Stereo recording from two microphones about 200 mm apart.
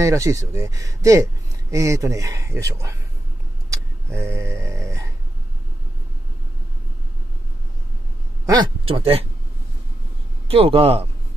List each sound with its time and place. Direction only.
0.0 s speech: 15° right (ahead or behind)
4.1 s a sound: 15° right (ahead or behind)
8.5 s speech: 20° right (ahead or behind)
10.5 s speech: 30° right (ahead or behind)